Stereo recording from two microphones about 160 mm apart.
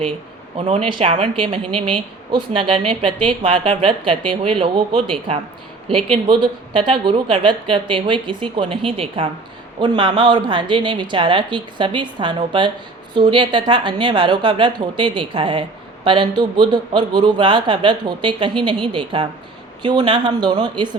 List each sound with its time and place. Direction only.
0.5 s a woman's voice: 35° right (ahead or behind)
6.1 s a woman's voice: 30° right (ahead or behind)